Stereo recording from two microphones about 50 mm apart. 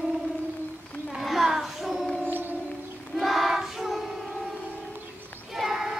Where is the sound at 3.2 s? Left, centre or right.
Centre.